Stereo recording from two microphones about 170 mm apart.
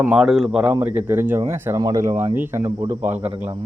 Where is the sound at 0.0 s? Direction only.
5° right (ahead or behind).